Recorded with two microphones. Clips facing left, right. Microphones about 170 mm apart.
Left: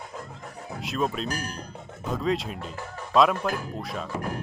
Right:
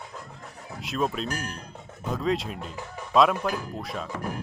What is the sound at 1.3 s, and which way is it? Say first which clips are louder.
Speech: even; 35° left (ahead or behind).